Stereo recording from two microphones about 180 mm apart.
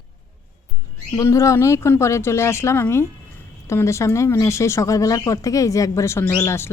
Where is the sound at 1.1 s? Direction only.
15° left (ahead or behind).